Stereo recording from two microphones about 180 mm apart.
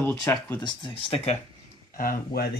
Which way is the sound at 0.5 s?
25° left (ahead or behind).